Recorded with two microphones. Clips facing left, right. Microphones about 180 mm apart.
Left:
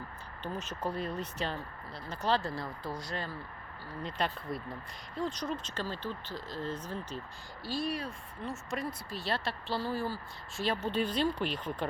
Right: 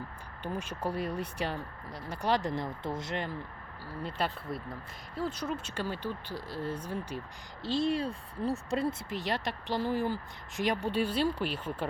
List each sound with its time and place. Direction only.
0.4 s speech: 10° right (ahead or behind)
4.0 s speech: 5° right (ahead or behind)
7.6 s speech: 25° right (ahead or behind); by 11.9 s 10° right (ahead or behind)